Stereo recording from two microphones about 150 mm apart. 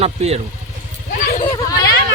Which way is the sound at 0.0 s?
45° right (ahead or behind).